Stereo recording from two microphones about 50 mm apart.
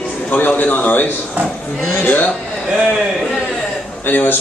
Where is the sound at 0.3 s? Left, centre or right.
Left.